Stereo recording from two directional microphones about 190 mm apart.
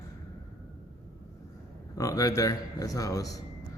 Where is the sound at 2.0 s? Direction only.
20° left (ahead or behind).